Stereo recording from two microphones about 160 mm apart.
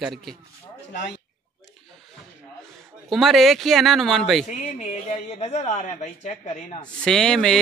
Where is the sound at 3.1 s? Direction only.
Centre (ahead or behind).